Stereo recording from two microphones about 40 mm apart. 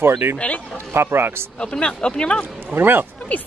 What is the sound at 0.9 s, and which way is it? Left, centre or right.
Speech, right.